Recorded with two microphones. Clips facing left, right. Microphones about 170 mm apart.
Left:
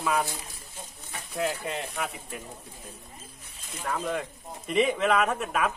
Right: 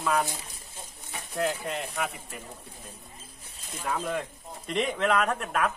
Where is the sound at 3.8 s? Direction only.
5° right (ahead or behind).